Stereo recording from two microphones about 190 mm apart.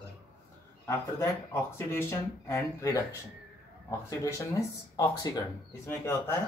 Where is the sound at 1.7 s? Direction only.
15° left (ahead or behind).